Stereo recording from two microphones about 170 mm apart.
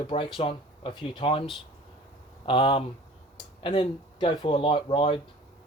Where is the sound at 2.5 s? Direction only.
30° left (ahead or behind).